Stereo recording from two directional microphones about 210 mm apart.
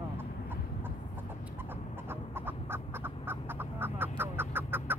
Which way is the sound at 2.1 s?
10° right (ahead or behind).